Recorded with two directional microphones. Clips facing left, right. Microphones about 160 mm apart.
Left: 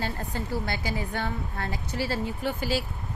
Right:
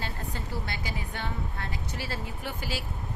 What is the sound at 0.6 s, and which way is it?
A woman's voice, 40° left (ahead or behind).